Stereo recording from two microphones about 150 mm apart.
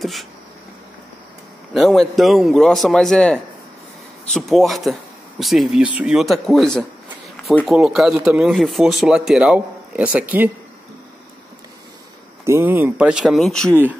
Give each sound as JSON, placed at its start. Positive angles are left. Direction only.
{"t": 0.0, "sound": "speech", "side_deg": 0}
{"t": 1.7, "sound": "speech", "side_deg": 0}
{"t": 12.4, "sound": "speech", "side_deg": -15}